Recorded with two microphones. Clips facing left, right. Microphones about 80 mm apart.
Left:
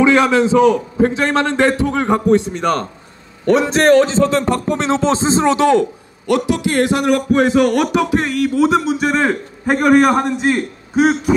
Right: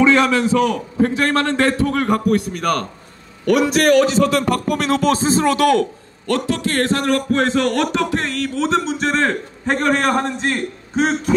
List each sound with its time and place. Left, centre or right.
0.0 s a man's voice: centre